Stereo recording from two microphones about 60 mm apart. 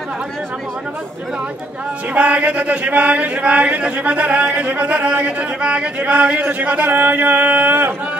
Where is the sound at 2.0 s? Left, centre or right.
Right.